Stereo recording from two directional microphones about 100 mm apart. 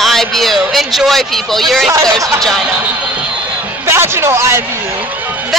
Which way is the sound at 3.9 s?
25° right (ahead or behind).